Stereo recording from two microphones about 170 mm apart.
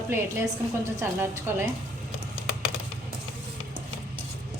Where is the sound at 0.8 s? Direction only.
15° right (ahead or behind).